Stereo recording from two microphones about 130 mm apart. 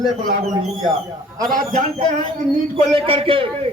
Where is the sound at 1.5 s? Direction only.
75° right (ahead or behind).